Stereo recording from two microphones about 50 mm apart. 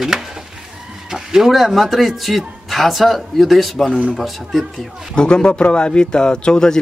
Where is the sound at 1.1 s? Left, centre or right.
Centre.